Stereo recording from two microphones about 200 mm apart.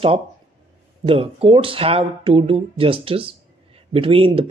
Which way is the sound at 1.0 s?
25° right (ahead or behind).